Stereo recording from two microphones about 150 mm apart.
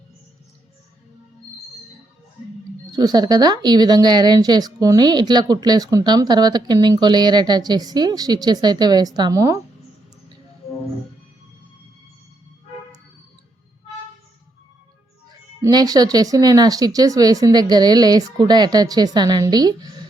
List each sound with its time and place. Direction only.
2.9 s a woman's voice: 25° right (ahead or behind)
15.3 s a woman's voice: 25° right (ahead or behind)